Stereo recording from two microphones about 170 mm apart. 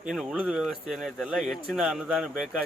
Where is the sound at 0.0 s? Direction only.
5° right (ahead or behind).